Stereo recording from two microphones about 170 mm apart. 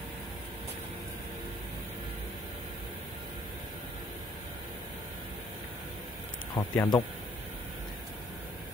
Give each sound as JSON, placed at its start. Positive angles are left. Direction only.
{"t": 6.5, "sound": "speech", "side_deg": 25}